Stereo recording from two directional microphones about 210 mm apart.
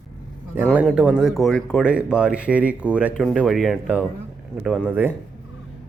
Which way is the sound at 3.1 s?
5° left (ahead or behind).